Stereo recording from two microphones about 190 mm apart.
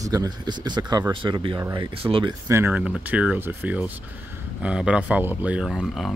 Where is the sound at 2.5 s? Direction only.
10° right (ahead or behind).